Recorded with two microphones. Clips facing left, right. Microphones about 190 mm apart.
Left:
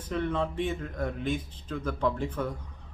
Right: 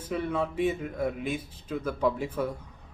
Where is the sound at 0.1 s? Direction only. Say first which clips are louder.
Even; 10° right (ahead or behind).